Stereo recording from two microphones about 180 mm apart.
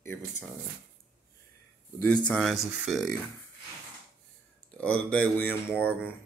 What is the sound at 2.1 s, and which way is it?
Speech, 5° left (ahead or behind).